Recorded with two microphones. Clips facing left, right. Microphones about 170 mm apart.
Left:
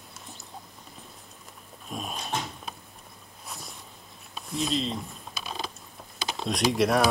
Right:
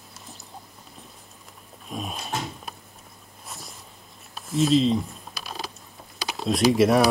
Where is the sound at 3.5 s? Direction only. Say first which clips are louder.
Even; centre (ahead or behind).